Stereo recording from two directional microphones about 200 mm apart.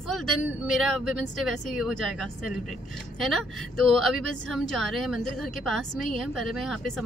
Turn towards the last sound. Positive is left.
turn(degrees=0)  # may be behind; listen again after turning